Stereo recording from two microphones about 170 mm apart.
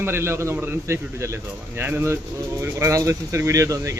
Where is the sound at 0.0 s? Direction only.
15° right (ahead or behind).